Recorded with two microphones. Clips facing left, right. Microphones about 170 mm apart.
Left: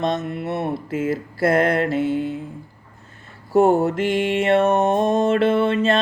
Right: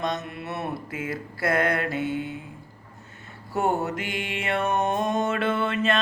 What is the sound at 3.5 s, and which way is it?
Mantra, 40° left (ahead or behind).